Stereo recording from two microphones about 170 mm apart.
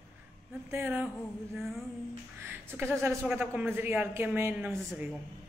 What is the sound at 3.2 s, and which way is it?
A woman's voice, 5° right (ahead or behind).